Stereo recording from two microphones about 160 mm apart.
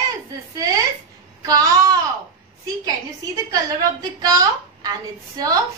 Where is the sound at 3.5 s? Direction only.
25° right (ahead or behind).